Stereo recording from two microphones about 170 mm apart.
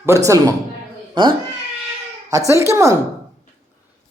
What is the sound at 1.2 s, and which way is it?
Speech, 30° right (ahead or behind).